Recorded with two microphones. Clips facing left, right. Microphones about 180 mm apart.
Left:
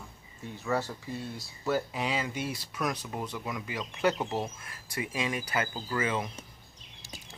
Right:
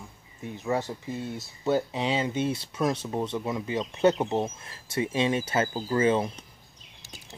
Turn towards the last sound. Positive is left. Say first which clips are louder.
# right 8 dB
turn(degrees=-30)  # may be behind; listen again after turning